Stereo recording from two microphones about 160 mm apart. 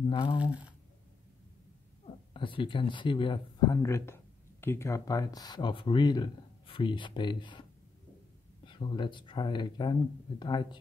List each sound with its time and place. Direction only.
0.1 s speech: 30° left (ahead or behind)
0.4 s speech: 10° right (ahead or behind)
2.3 s speech: 30° left (ahead or behind)
8.6 s speech: 30° left (ahead or behind)